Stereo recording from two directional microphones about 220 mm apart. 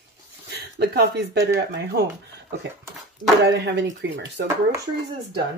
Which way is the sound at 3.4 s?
50° right (ahead or behind).